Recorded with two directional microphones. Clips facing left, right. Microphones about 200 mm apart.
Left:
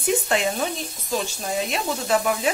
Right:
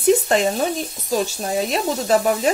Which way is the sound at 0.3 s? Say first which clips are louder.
Right 5 dB; 40° right (ahead or behind).